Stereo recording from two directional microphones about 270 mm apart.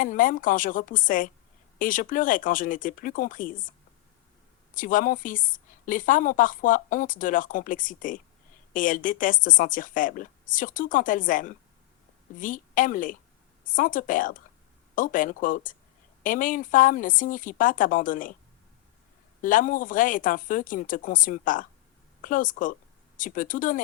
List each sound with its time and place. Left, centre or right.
0.0 s a woman's voice: left
19.4 s a woman's voice: left